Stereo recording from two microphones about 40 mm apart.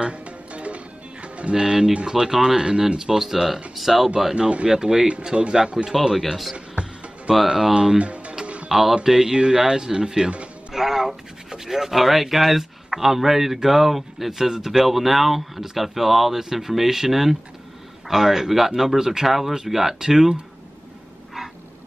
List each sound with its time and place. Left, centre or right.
0.0 s music: right
1.5 s speech: centre
4.4 s a man's voice: right
4.6 s a man's voice: centre
6.5 s music: right
7.4 s speech: centre
8.0 s music: right
8.6 s music: centre
9.0 s a man's voice: centre
10.7 s speech: centre